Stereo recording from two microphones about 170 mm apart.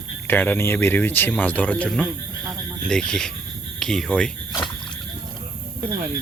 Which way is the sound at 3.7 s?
Centre (ahead or behind).